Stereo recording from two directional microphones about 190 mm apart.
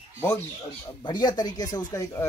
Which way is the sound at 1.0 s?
20° left (ahead or behind).